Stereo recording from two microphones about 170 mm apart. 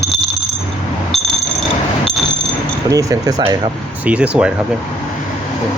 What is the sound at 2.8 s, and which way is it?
Speech, 20° right (ahead or behind).